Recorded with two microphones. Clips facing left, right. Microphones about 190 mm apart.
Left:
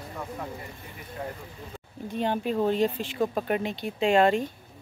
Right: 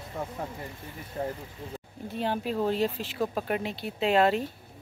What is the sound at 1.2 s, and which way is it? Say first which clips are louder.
Speech: right 4 dB; 35° right (ahead or behind).